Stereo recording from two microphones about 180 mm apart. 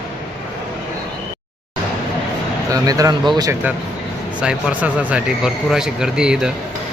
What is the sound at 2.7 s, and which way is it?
Speech, 20° right (ahead or behind).